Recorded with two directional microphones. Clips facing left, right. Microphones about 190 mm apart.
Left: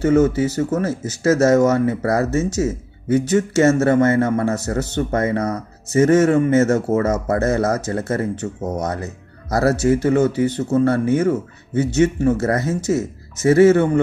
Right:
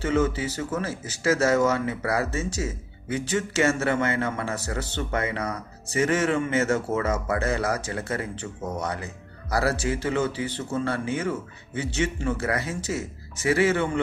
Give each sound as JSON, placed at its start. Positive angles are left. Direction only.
{"t": 0.0, "sound": "speech", "side_deg": 40}